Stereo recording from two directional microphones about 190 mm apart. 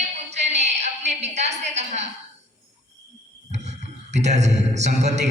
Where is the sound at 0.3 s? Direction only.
35° right (ahead or behind).